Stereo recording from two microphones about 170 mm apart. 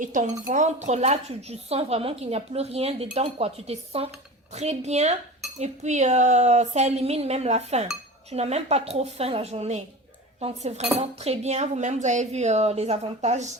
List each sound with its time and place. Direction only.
0.0 s speech: 50° right (ahead or behind)